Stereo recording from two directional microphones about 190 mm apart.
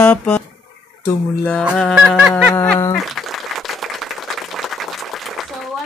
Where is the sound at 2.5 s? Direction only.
10° left (ahead or behind).